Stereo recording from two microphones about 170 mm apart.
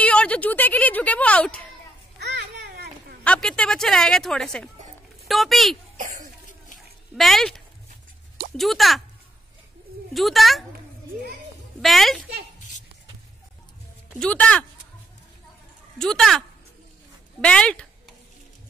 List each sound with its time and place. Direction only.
0.0 s speech: 5° left (ahead or behind)
2.1 s babbling: 90° right; by 3.2 s 70° right (ahead or behind)
3.3 s a woman's voice: 5° left (ahead or behind)
7.2 s a woman's voice: centre (ahead or behind)
10.1 s a woman's voice: centre (ahead or behind)
11.8 s a woman's voice: centre (ahead or behind)
14.2 s speech: 5° left (ahead or behind)
16.0 s a woman's voice: centre (ahead or behind)